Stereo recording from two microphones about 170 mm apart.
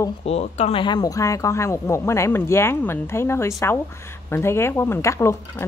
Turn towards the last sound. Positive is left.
turn(degrees=15)  # may be behind; listen again after turning